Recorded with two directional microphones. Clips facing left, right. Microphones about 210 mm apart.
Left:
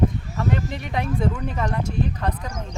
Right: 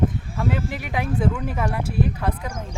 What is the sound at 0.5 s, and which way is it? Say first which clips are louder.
Speech: even; 5° right (ahead or behind).